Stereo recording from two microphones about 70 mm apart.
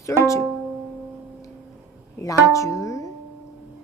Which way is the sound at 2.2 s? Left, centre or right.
Left.